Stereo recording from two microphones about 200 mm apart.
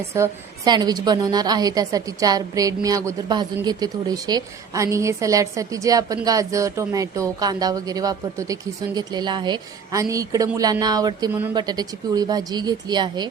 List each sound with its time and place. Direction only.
0.1 s a woman's voice: 15° right (ahead or behind)